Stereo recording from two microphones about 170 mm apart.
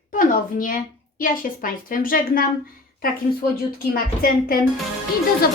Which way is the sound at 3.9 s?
60° left (ahead or behind).